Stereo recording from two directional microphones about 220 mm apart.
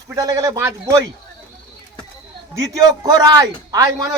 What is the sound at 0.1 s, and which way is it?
Speech, 15° right (ahead or behind).